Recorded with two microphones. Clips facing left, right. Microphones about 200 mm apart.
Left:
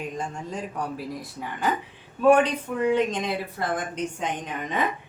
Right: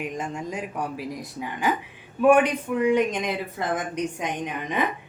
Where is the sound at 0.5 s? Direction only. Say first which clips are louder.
Right 1 dB; 10° right (ahead or behind).